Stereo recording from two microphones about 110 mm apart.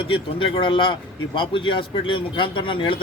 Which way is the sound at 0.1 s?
55° left (ahead or behind).